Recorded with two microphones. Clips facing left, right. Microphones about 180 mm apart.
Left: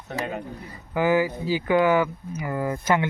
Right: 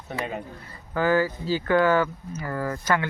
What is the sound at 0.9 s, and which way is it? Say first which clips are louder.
Speech: left 1 dB; 15° left (ahead or behind).